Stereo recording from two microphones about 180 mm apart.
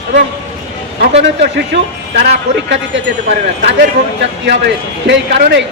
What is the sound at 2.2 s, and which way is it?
Speech, 90° right.